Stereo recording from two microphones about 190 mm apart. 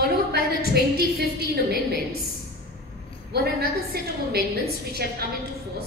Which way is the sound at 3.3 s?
55° right (ahead or behind).